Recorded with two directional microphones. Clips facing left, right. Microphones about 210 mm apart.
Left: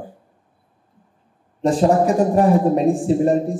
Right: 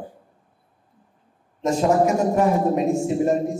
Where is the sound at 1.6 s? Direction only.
35° left (ahead or behind).